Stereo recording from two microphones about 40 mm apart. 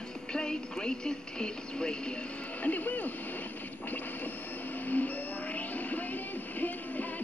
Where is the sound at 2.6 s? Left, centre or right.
Left.